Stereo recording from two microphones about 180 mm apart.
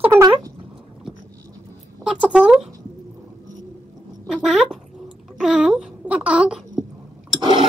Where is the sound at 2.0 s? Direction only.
5° right (ahead or behind).